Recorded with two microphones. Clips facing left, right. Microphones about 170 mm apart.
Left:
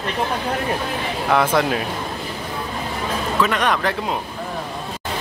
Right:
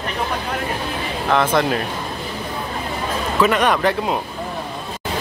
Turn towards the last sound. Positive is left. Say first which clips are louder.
# right 3 dB
turn(degrees=-5)  # may be behind; listen again after turning